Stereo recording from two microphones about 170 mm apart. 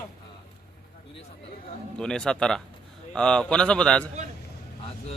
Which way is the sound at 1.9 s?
5° left (ahead or behind).